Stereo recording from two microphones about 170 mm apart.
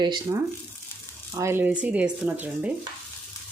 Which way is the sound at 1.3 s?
15° right (ahead or behind).